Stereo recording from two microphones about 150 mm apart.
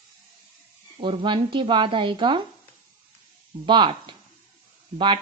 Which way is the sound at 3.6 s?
30° right (ahead or behind).